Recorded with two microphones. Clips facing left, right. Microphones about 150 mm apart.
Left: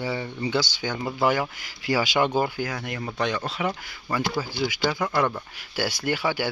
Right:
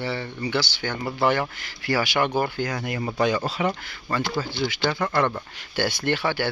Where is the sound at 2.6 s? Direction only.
Centre (ahead or behind).